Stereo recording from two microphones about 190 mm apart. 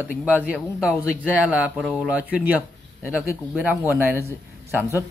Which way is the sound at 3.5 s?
10° right (ahead or behind).